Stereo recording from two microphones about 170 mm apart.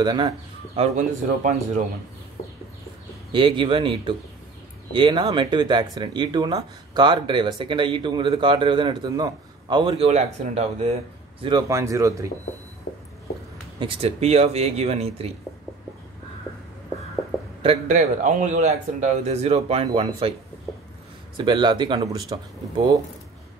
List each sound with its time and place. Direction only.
0.0 s speech: 25° right (ahead or behind)
0.7 s a man's voice: 45° right (ahead or behind)
3.3 s speech: 30° right (ahead or behind)
11.7 s speech: 20° right (ahead or behind)
13.7 s a man's voice: 35° right (ahead or behind)
17.6 s a man's voice: 40° right (ahead or behind)
21.4 s speech: 25° right (ahead or behind)